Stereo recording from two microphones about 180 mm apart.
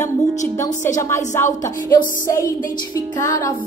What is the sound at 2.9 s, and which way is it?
Speech, 20° left (ahead or behind).